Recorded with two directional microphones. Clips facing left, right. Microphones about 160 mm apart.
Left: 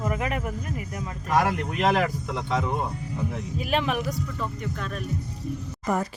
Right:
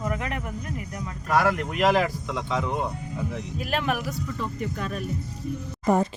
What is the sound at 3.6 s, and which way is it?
Speech, centre (ahead or behind).